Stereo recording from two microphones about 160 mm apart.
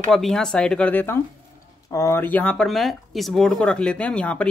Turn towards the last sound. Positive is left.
turn(degrees=5)  # may be behind; listen again after turning